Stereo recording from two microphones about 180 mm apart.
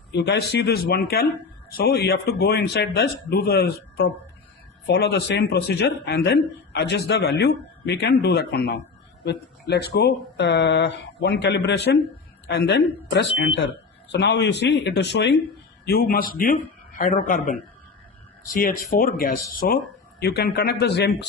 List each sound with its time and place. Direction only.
0.1 s a man's voice: 70° left (ahead or behind)
15.9 s speech: 55° left (ahead or behind)
18.5 s speech: 50° left (ahead or behind); by 21.2 s 70° left (ahead or behind)